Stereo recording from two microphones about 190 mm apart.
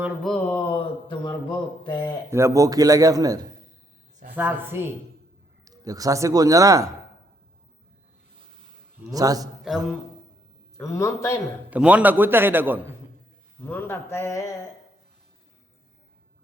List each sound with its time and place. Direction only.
0.0 s mantra: centre (ahead or behind)
0.4 s a sound: 20° left (ahead or behind)
2.3 s a man's voice: 15° right (ahead or behind)
9.0 s a man's voice: 20° right (ahead or behind)
10.8 s speech: 15° left (ahead or behind)
11.7 s speech: 5° right (ahead or behind)
13.7 s speech: 10° left (ahead or behind)